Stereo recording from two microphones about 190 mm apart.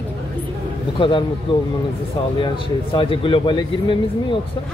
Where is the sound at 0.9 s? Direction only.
25° left (ahead or behind).